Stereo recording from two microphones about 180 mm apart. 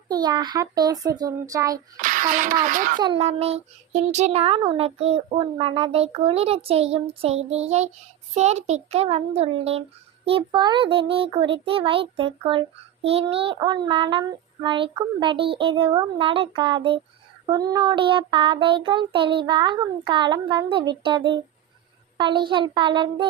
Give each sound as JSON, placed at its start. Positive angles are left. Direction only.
{"t": 0.1, "sound": "a child's voice", "side_deg": -25}
{"t": 2.0, "sound": "speech", "side_deg": -50}
{"t": 3.0, "sound": "a child's voice", "side_deg": -30}